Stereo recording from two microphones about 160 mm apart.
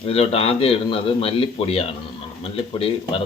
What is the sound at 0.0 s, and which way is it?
A man's voice, 35° left (ahead or behind).